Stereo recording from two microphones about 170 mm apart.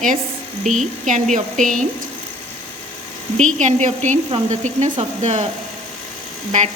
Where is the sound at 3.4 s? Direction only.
45° right (ahead or behind).